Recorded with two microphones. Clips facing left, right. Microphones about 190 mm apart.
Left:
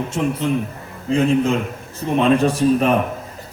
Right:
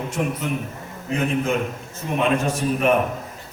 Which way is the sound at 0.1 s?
30° left (ahead or behind).